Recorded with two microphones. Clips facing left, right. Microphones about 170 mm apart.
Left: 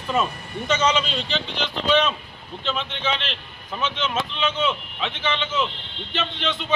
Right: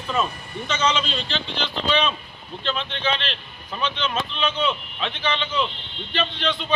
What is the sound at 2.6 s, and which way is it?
A man's voice, 10° left (ahead or behind).